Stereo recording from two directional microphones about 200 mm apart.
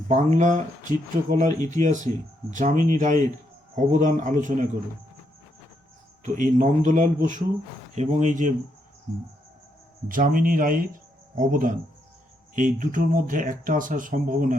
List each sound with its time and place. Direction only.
0.1 s speech: 35° right (ahead or behind)
6.2 s speech: 40° right (ahead or behind)
10.1 s speech: 45° right (ahead or behind)